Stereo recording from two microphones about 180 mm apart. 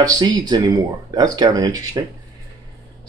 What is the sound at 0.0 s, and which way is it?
Speech, 20° right (ahead or behind).